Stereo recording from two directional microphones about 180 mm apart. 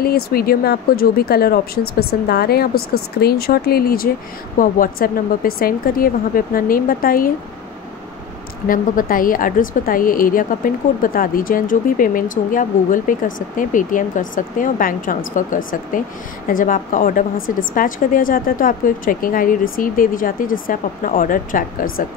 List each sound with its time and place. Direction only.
0.0 s a woman's voice: 55° left (ahead or behind)
8.6 s a woman's voice: 50° left (ahead or behind)